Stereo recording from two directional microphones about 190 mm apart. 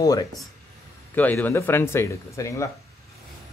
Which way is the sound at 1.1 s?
10° left (ahead or behind).